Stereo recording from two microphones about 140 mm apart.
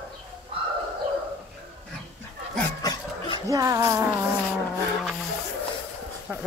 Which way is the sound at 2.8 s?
30° left (ahead or behind).